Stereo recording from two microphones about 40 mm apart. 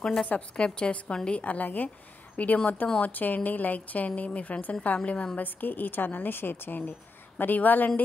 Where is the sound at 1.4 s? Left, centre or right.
Left.